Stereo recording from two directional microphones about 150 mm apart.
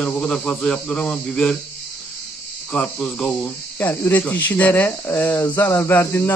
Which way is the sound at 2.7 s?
10° left (ahead or behind).